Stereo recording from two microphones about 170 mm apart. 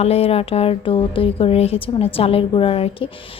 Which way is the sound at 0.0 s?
35° left (ahead or behind).